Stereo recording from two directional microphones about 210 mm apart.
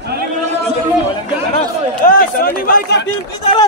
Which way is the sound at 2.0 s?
40° left (ahead or behind).